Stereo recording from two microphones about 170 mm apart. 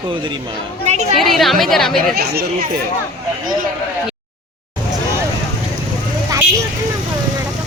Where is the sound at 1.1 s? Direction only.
Centre (ahead or behind).